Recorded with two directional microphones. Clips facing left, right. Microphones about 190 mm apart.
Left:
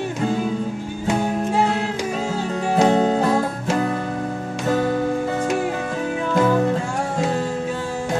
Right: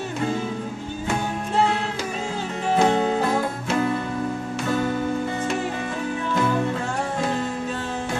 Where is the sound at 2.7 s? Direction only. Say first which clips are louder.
Left 3 dB; 35° left (ahead or behind).